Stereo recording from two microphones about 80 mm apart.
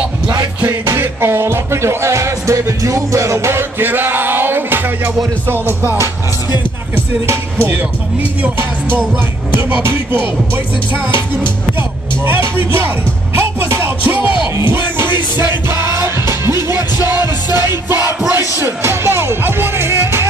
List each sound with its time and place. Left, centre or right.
0.9 s music: right
7.2 s music: right
12.3 s music: right
16.5 s music: left
18.6 s music: right